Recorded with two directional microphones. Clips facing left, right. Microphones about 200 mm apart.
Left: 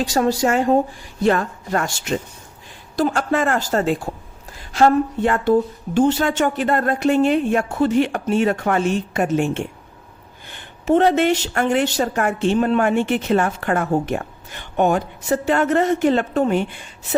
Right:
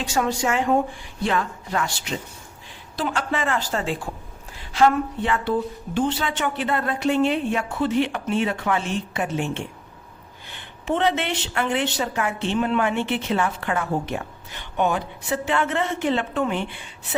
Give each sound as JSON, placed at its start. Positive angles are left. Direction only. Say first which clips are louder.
{"t": 0.0, "sound": "a woman's voice", "louder": "left 5 dB", "side_deg": 35}